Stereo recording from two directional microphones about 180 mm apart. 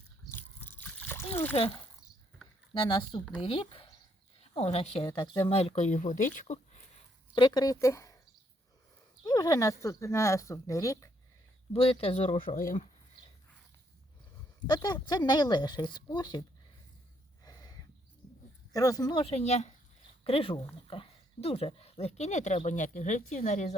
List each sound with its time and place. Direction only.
0.3 s water: 10° left (ahead or behind)
2.7 s speech: 25° left (ahead or behind); by 6.6 s 45° left (ahead or behind)
7.3 s speech: 25° left (ahead or behind)
9.2 s speech: 20° left (ahead or behind)
11.7 s speech: 30° left (ahead or behind)
14.7 s speech: 25° left (ahead or behind)
17.4 s a sound: 20° left (ahead or behind)
18.7 s speech: 20° left (ahead or behind)
19.2 s speech: 35° left (ahead or behind)